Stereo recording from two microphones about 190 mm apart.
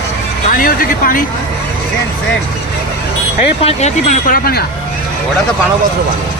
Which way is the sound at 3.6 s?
35° left (ahead or behind).